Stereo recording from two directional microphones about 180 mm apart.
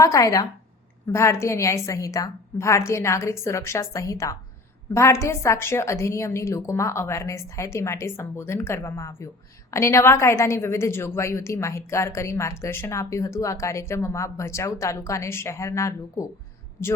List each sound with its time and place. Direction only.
0.0 s a woman's voice: 15° left (ahead or behind)